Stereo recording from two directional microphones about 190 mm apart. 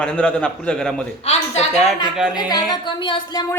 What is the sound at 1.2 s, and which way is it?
Speech, 35° left (ahead or behind).